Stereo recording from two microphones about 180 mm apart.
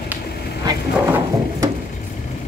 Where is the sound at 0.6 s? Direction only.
20° right (ahead or behind).